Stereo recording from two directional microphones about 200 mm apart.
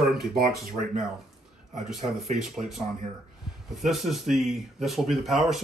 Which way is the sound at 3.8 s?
Centre (ahead or behind).